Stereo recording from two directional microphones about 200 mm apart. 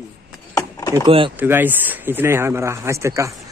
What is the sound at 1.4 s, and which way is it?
Speech, 10° right (ahead or behind).